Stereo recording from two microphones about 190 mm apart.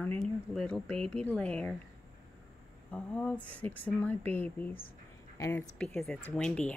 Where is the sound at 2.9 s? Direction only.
5° left (ahead or behind).